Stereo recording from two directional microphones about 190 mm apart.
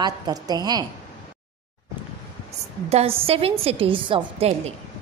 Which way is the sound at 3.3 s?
30° right (ahead or behind).